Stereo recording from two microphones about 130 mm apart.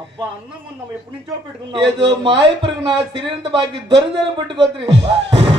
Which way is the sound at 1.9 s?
40° right (ahead or behind).